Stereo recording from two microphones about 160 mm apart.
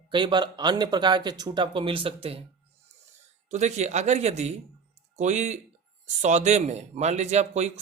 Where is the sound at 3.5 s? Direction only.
45° right (ahead or behind).